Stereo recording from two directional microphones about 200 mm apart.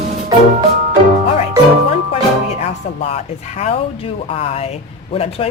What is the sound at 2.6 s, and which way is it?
Speech, 35° left (ahead or behind).